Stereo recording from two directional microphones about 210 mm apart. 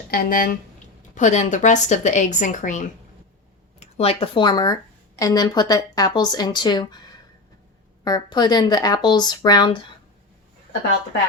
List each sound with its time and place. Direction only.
0.1 s a woman's voice: 45° left (ahead or behind); by 7.0 s 20° left (ahead or behind)
8.0 s speech: 20° left (ahead or behind)